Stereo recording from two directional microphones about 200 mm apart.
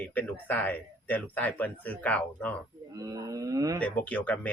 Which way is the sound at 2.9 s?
15° right (ahead or behind).